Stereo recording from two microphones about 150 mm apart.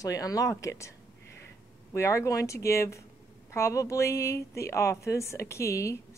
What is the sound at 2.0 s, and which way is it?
Speech, 20° left (ahead or behind).